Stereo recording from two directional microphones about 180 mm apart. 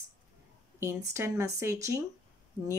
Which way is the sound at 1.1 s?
15° right (ahead or behind).